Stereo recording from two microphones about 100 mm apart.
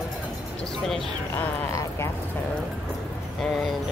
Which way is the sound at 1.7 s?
30° left (ahead or behind).